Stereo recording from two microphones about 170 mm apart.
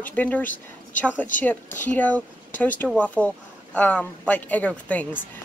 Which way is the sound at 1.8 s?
10° left (ahead or behind).